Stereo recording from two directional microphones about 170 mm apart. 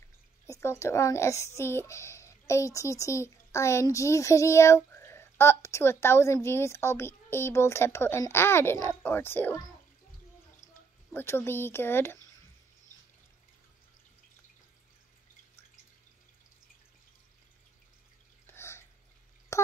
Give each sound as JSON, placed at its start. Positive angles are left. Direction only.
{"t": 0.5, "sound": "speech", "side_deg": 15}
{"t": 11.1, "sound": "speech", "side_deg": 15}
{"t": 18.5, "sound": "a sound", "side_deg": 15}